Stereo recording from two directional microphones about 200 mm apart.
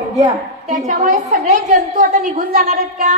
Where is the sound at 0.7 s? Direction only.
40° right (ahead or behind).